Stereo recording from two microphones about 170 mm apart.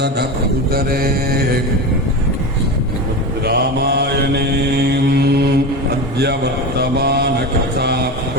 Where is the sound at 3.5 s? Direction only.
70° right (ahead or behind).